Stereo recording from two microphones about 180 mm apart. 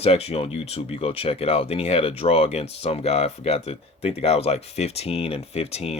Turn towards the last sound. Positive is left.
turn(degrees=35)  # may be behind; listen again after turning